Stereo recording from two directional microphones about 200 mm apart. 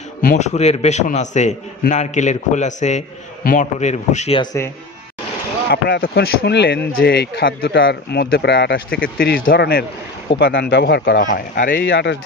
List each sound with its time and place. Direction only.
0.2 s a man's voice: 40° left (ahead or behind)
5.7 s speech: 55° left (ahead or behind)
11.9 s speech: 65° left (ahead or behind)